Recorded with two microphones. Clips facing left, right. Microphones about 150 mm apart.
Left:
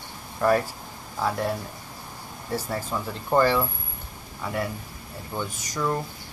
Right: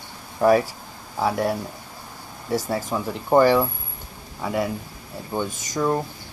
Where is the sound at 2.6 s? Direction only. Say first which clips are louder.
Right 4 dB; 15° right (ahead or behind).